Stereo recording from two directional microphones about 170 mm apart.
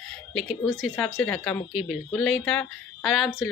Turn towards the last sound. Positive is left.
turn(degrees=0)  # may be behind; listen again after turning